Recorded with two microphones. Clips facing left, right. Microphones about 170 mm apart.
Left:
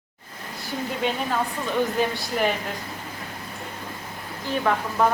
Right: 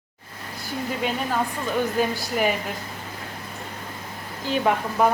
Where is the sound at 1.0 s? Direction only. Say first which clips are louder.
Left 2 dB; 5° right (ahead or behind).